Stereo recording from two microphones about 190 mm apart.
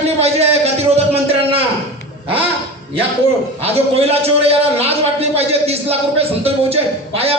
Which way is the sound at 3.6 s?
30° right (ahead or behind).